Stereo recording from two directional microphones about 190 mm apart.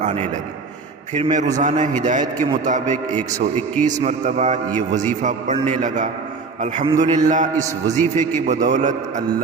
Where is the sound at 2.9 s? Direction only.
10° left (ahead or behind).